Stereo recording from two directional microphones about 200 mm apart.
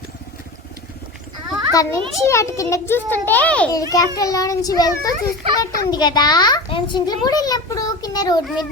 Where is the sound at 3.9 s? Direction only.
15° left (ahead or behind).